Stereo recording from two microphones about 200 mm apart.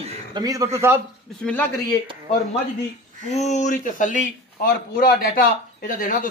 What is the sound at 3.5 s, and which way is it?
A man's voice, 40° left (ahead or behind).